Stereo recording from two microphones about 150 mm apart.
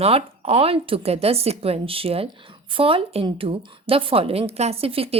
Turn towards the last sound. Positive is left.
turn(degrees=-40)  # may be behind; listen again after turning